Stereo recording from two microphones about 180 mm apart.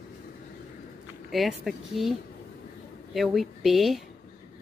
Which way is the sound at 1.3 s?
Centre (ahead or behind).